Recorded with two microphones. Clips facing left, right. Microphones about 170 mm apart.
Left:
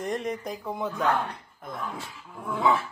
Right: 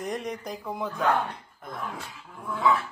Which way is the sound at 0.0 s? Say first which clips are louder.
Left 2 dB; centre (ahead or behind).